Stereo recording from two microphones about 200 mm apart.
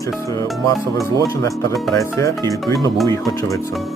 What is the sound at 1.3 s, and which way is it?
Speech, 15° left (ahead or behind).